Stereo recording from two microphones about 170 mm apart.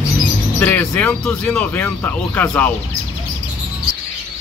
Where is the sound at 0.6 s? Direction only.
10° left (ahead or behind).